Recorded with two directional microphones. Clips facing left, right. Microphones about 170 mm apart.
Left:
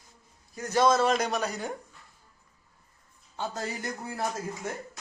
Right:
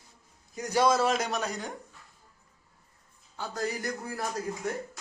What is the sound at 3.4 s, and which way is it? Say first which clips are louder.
Speech: right 1 dB; 25° left (ahead or behind).